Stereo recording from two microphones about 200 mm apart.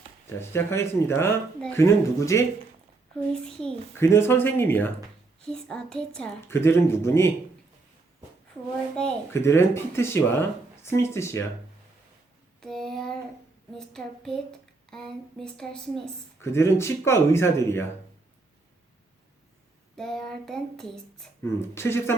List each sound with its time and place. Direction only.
0.3 s speech: 10° left (ahead or behind)
3.4 s speech: 5° left (ahead or behind)
9.0 s speech: 10° left (ahead or behind)
12.5 s a sound: centre (ahead or behind)
13.7 s speech: centre (ahead or behind)
20.0 s speech: centre (ahead or behind)
21.4 s speech: 15° left (ahead or behind)